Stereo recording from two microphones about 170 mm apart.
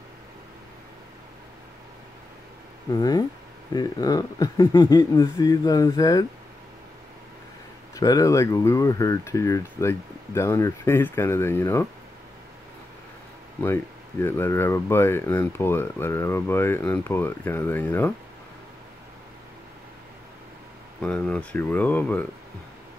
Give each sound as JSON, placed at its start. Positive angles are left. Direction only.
{"t": 2.9, "sound": "speech", "side_deg": 25}
{"t": 7.9, "sound": "speech", "side_deg": 20}
{"t": 14.2, "sound": "speech", "side_deg": 15}
{"t": 21.0, "sound": "speech", "side_deg": 10}